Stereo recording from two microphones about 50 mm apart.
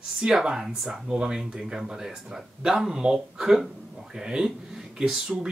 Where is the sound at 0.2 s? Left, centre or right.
Centre.